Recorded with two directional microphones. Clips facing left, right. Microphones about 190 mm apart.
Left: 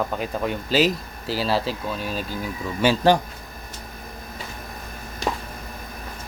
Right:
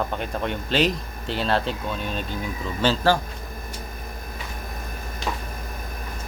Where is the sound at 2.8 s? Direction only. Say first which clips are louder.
Left 3 dB; 15° left (ahead or behind).